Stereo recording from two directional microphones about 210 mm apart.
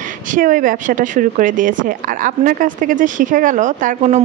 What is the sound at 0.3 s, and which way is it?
A woman's voice, 40° right (ahead or behind).